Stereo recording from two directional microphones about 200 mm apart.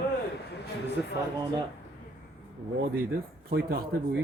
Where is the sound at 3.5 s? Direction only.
50° right (ahead or behind).